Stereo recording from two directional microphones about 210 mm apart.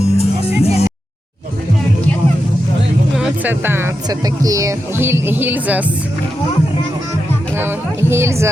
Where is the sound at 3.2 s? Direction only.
10° right (ahead or behind).